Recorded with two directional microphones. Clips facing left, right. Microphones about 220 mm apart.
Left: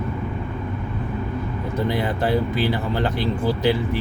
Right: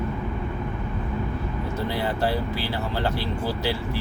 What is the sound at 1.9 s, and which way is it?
Speech, 20° left (ahead or behind).